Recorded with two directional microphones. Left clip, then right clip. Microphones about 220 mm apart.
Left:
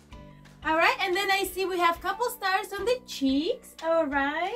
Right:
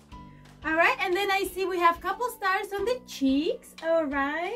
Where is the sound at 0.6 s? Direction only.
5° right (ahead or behind).